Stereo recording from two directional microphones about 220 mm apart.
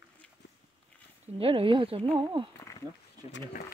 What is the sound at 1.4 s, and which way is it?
Speech, 25° right (ahead or behind).